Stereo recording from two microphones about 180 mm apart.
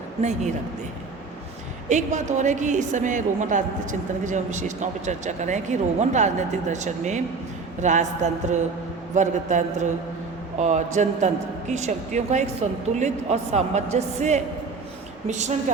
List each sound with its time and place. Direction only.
0.2 s speech: 40° right (ahead or behind)
1.9 s a woman's voice: 40° right (ahead or behind)